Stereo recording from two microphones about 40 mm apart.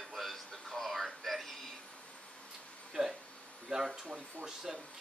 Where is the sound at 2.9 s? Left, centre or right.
Centre.